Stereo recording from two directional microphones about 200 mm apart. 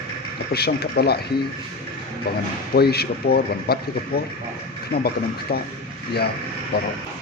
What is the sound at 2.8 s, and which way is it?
Speech, 50° left (ahead or behind).